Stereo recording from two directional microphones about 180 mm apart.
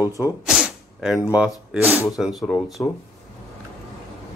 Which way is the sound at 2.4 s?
10° left (ahead or behind).